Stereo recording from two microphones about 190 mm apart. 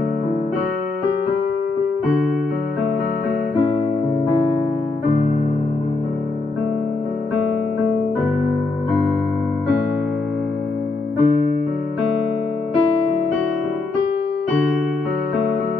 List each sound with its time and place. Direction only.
11.2 s music: 45° left (ahead or behind)